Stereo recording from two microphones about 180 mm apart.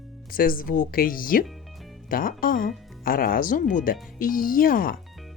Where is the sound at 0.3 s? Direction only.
55° left (ahead or behind).